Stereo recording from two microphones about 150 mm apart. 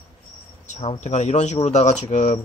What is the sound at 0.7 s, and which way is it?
Speech, 50° left (ahead or behind).